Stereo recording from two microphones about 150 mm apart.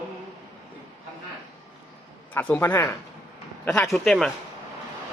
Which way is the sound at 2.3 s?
15° left (ahead or behind).